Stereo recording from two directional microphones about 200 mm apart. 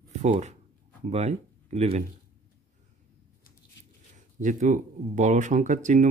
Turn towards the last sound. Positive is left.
turn(degrees=-40)  # may be behind; listen again after turning